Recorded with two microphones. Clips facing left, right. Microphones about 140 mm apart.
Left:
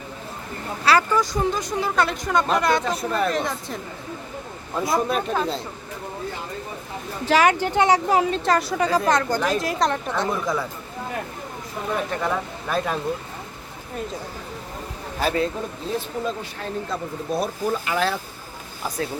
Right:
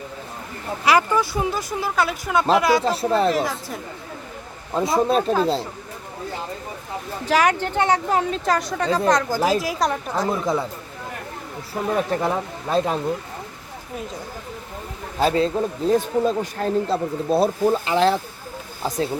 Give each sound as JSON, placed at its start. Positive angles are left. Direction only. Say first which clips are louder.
{"t": 0.9, "sound": "speech", "louder": "right 1 dB", "side_deg": -15}
{"t": 2.8, "sound": "speech", "louder": "right 4 dB", "side_deg": -30}
{"t": 3.3, "sound": "speech", "louder": "right 2 dB", "side_deg": -5}
{"t": 4.7, "sound": "speech", "louder": "right 4 dB", "side_deg": -25}
{"t": 7.3, "sound": "speech", "louder": "left 1 dB", "side_deg": 0}
{"t": 7.8, "sound": "speech", "louder": "left 2 dB", "side_deg": 15}
{"t": 8.3, "sound": "speech", "louder": "left 1 dB", "side_deg": 0}
{"t": 10.2, "sound": "speech", "louder": "right 5 dB", "side_deg": -25}
{"t": 12.1, "sound": "speech", "louder": "right 3 dB", "side_deg": -30}
{"t": 15.2, "sound": "speech", "louder": "right 4 dB", "side_deg": -25}
{"t": 15.9, "sound": "speech", "louder": "right 8 dB", "side_deg": -40}